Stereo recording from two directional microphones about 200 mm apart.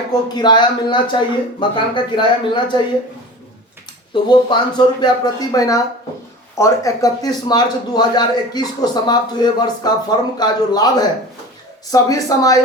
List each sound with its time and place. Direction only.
0.1 s speech: 20° left (ahead or behind)
4.1 s speech: 25° left (ahead or behind)